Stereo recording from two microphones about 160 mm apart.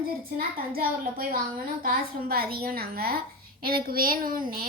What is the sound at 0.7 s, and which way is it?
A woman's voice, 65° right (ahead or behind).